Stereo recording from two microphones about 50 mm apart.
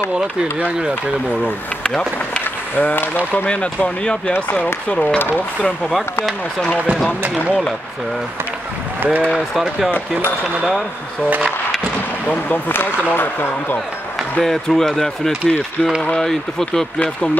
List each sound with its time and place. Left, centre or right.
0.1 s speech: centre
1.8 s run: left
2.7 s speech: left
3.4 s speech: left
4.3 s speech: left
4.8 s speech: left
9.0 s speech: right
12.3 s speech: left
12.7 s speech: left
14.4 s speech: centre